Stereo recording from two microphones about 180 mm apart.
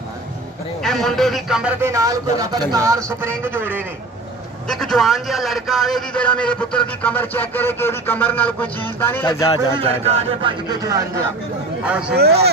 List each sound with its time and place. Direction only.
0.8 s speech: centre (ahead or behind)
4.6 s a man's voice: centre (ahead or behind)
9.8 s speech: 30° right (ahead or behind)
10.7 s speech: 20° right (ahead or behind)
11.8 s speech: 5° right (ahead or behind)
12.2 s speech: 65° right (ahead or behind)